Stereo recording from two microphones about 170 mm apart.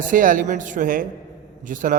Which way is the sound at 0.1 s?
50° right (ahead or behind).